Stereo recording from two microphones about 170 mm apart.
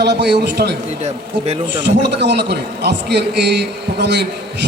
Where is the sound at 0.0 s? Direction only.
80° right.